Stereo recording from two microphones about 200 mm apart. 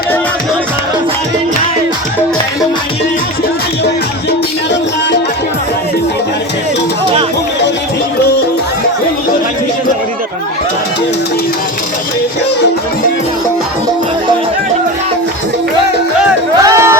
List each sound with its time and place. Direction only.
4.3 s music: 60° left (ahead or behind)
16.6 s music: 15° right (ahead or behind)